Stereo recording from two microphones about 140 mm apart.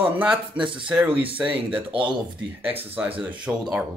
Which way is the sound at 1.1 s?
40° right (ahead or behind).